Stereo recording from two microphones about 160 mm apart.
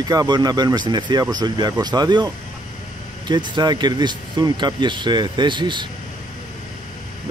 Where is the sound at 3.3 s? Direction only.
25° right (ahead or behind).